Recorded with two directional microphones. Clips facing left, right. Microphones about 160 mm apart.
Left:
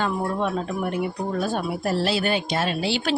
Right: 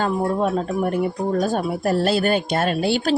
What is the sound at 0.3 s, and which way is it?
Speech, 40° right (ahead or behind).